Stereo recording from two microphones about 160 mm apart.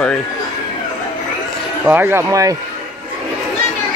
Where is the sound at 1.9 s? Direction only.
15° right (ahead or behind).